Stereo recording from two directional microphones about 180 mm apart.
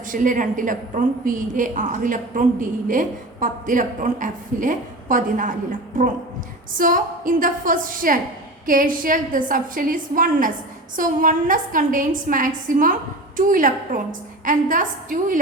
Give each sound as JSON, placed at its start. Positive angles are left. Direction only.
{"t": 0.1, "sound": "a woman's voice", "side_deg": -50}
{"t": 6.7, "sound": "a woman's voice", "side_deg": -50}